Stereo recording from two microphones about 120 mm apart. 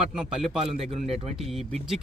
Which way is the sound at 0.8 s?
65° right (ahead or behind).